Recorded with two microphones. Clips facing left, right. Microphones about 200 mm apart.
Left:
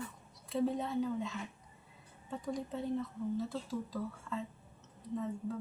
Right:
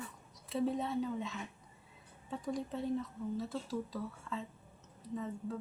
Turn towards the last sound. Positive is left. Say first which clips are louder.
# left 2 dB
turn(degrees=0)  # may be behind; listen again after turning